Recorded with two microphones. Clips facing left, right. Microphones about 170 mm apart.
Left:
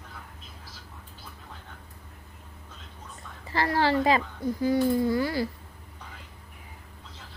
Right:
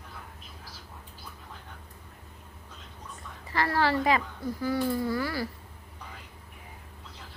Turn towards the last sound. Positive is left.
turn(degrees=20)  # may be behind; listen again after turning